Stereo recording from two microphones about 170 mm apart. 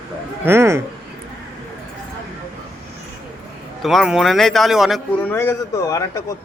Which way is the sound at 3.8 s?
Centre (ahead or behind).